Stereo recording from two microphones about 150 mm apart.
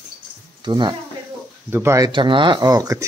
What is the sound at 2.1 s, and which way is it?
Speech, 35° right (ahead or behind).